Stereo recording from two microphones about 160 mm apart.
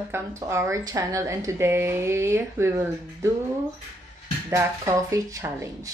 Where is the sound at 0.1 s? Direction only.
15° right (ahead or behind).